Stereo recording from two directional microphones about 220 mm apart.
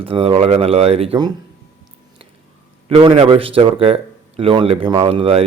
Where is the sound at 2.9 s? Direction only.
25° right (ahead or behind).